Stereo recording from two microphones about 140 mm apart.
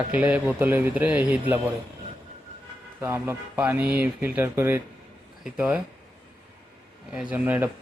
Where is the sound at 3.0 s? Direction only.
15° right (ahead or behind).